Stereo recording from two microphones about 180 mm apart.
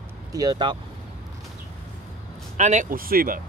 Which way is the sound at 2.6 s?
40° right (ahead or behind).